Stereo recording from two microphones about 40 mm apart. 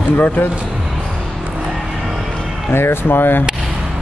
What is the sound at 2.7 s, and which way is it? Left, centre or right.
Speech, left.